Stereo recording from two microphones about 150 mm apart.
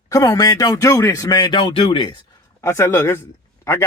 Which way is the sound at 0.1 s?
25° left (ahead or behind).